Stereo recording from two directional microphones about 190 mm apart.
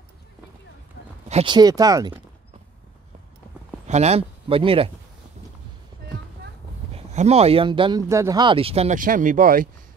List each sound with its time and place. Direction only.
1.3 s speech: 25° right (ahead or behind)
3.8 s speech: 35° right (ahead or behind)
7.0 s speech: 35° right (ahead or behind)